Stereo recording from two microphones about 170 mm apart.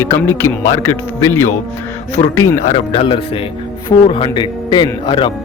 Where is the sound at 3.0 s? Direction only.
30° left (ahead or behind).